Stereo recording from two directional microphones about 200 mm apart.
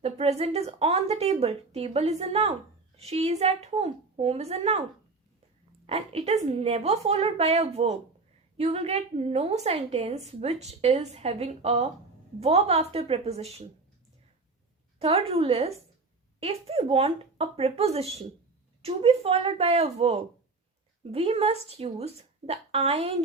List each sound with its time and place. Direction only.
0.0 s a woman's voice: 30° right (ahead or behind)
14.9 s a woman's voice: 30° right (ahead or behind)